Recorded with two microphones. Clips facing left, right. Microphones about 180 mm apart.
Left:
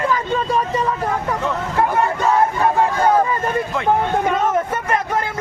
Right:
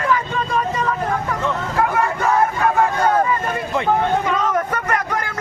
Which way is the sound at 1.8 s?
30° left (ahead or behind).